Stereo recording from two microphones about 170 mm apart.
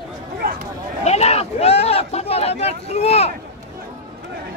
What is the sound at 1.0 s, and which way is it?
Speech, 40° left (ahead or behind).